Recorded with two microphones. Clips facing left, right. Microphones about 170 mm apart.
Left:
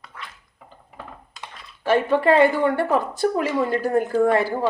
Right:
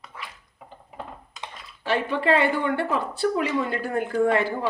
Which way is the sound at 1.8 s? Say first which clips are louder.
Left 6 dB; 45° left (ahead or behind).